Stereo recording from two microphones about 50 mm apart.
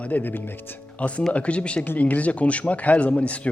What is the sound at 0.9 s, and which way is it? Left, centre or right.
Speech, left.